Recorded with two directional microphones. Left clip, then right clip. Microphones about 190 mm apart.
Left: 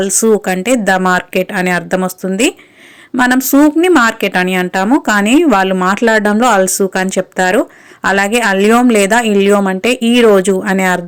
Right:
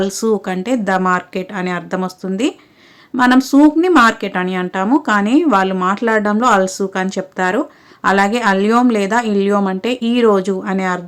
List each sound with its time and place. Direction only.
0.2 s speech: 10° left (ahead or behind)